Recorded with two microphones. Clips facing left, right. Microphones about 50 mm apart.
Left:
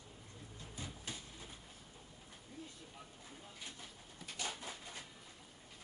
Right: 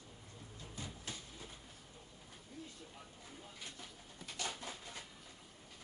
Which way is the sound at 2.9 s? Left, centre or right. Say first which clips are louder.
Even; centre.